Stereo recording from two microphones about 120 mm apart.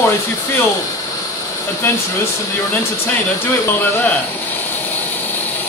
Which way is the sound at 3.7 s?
20° left (ahead or behind).